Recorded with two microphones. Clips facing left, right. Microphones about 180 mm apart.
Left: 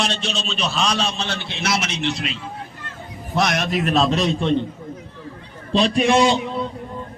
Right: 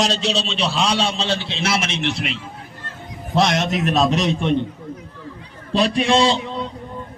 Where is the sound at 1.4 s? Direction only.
60° left (ahead or behind).